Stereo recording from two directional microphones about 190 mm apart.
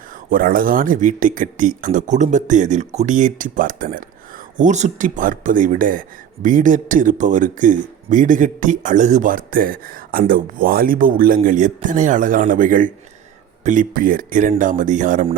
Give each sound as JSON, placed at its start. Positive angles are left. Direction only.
{"t": 0.3, "sound": "speech", "side_deg": -45}